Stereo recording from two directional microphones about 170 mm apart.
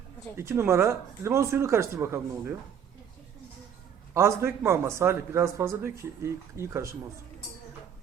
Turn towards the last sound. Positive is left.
turn(degrees=-15)  # may be behind; listen again after turning